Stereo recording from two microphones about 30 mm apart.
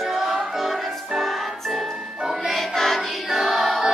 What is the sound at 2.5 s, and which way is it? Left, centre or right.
Music, centre.